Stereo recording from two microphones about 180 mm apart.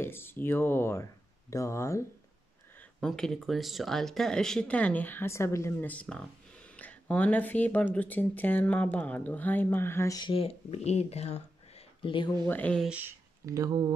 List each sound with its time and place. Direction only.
0.0 s speech: 10° left (ahead or behind)
2.8 s speech: 5° left (ahead or behind); by 12.3 s 30° left (ahead or behind)
12.4 s speech: 10° left (ahead or behind)
12.8 s speech: 10° right (ahead or behind)